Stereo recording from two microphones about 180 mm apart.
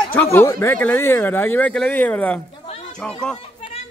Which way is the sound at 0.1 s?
10° left (ahead or behind).